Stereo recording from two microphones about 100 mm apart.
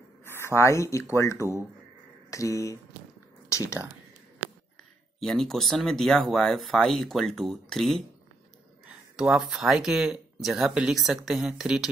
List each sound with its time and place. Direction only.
0.6 s speech: 30° left (ahead or behind)
2.3 s a sound: 30° left (ahead or behind)
3.4 s speech: 30° left (ahead or behind)
5.2 s speech: 5° left (ahead or behind)